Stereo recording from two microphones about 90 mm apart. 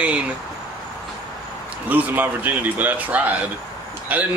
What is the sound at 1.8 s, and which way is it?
A man's voice, 20° right (ahead or behind).